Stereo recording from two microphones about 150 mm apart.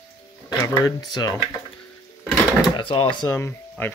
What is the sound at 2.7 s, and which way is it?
Speech, 35° left (ahead or behind).